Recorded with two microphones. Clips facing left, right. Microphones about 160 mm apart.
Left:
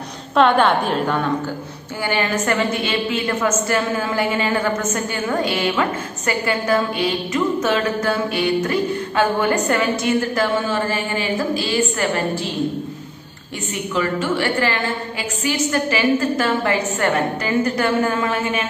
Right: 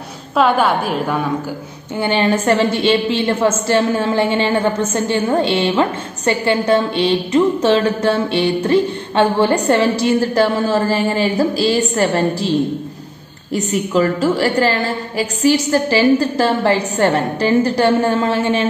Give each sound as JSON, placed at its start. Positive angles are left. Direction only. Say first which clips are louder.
{"t": 0.4, "sound": "a woman's voice", "louder": "even", "side_deg": -5}
{"t": 2.0, "sound": "a woman's voice", "louder": "right 5 dB", "side_deg": -25}
{"t": 13.6, "sound": "a woman's voice", "louder": "right 7 dB", "side_deg": -35}